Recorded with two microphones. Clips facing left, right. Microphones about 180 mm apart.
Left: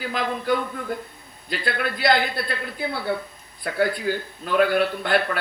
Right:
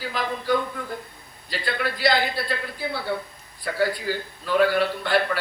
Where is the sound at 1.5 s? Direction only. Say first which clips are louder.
Left 1 dB; 55° left (ahead or behind).